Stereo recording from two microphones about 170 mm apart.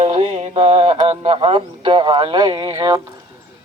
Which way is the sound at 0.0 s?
40° right (ahead or behind).